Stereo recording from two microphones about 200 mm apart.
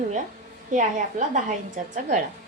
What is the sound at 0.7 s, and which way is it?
A woman's voice, 40° right (ahead or behind).